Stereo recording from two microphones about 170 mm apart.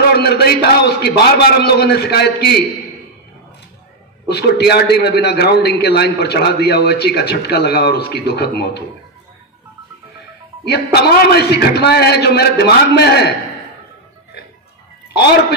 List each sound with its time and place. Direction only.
0.1 s a man's voice: 70° left (ahead or behind)
4.3 s a man's voice: 75° left (ahead or behind)
10.6 s a man's voice: 70° left (ahead or behind)